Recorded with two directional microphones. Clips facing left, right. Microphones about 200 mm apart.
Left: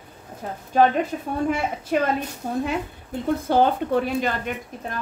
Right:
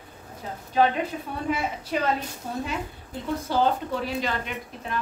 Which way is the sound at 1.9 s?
55° left (ahead or behind).